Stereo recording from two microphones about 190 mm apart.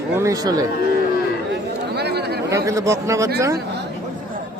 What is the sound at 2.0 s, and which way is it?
Chatter, 60° right (ahead or behind).